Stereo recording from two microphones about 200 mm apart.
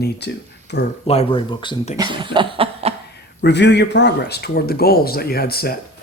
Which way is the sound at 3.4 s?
60° left (ahead or behind).